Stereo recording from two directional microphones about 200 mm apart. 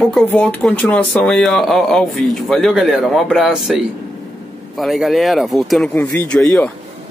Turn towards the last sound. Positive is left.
turn(degrees=5)  # may be behind; listen again after turning